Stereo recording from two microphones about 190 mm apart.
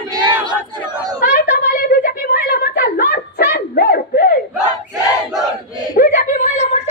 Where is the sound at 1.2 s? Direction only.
55° left (ahead or behind).